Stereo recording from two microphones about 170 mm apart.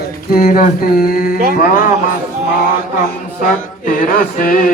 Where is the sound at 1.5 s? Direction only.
55° left (ahead or behind).